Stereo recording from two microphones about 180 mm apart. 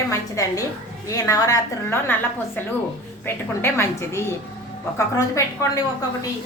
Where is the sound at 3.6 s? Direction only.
15° left (ahead or behind).